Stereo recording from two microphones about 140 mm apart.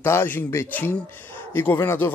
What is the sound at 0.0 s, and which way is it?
Speech, 15° left (ahead or behind).